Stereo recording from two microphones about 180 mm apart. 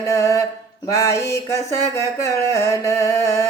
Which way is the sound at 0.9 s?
15° left (ahead or behind).